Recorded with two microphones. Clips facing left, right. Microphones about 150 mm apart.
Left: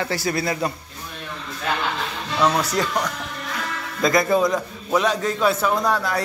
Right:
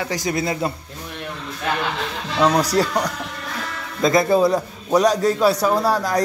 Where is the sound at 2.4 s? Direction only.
35° right (ahead or behind).